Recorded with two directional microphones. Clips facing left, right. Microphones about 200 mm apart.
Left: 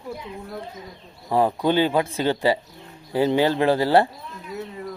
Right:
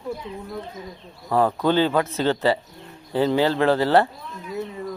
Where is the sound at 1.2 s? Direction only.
15° left (ahead or behind).